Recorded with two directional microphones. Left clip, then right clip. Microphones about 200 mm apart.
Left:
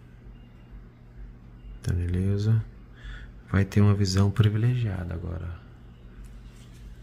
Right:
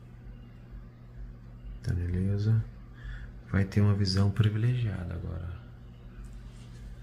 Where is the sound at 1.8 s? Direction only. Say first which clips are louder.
Left 4 dB; 35° left (ahead or behind).